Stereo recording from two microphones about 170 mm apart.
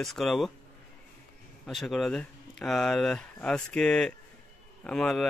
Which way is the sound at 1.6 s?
Centre (ahead or behind).